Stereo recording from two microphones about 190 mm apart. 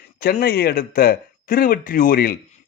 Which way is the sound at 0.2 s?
50° left (ahead or behind).